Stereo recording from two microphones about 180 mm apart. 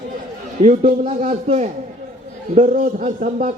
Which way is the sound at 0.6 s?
40° right (ahead or behind).